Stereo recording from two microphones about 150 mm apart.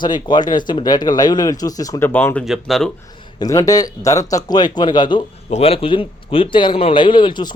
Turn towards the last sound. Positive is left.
turn(degrees=30)  # may be behind; listen again after turning